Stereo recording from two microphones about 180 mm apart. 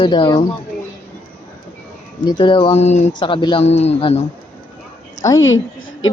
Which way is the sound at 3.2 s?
25° left (ahead or behind).